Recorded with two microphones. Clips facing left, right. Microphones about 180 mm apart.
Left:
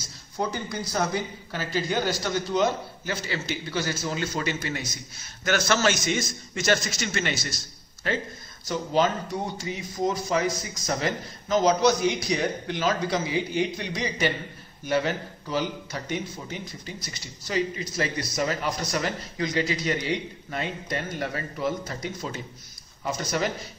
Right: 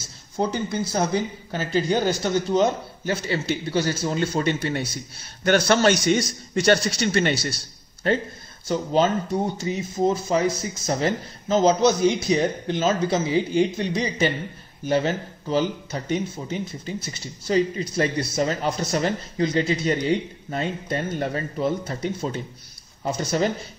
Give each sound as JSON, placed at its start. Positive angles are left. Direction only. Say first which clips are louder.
{"t": 0.4, "sound": "a man's voice", "louder": "right 5 dB", "side_deg": -25}